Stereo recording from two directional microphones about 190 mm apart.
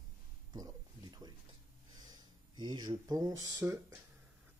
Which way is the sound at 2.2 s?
20° right (ahead or behind).